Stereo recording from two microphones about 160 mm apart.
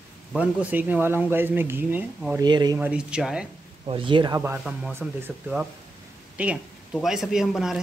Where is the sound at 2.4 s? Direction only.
25° right (ahead or behind).